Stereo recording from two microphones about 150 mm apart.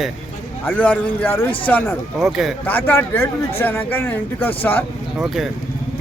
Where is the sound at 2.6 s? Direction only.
15° left (ahead or behind).